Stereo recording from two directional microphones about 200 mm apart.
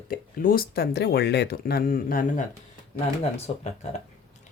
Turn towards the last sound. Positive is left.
turn(degrees=35)  # may be behind; listen again after turning